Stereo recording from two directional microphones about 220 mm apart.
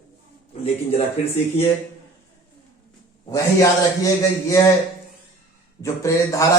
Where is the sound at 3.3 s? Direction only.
15° left (ahead or behind).